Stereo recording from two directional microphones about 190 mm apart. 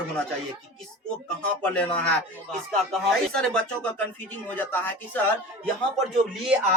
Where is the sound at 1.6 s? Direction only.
5° left (ahead or behind).